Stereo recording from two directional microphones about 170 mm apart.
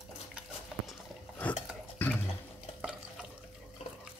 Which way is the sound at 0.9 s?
10° left (ahead or behind).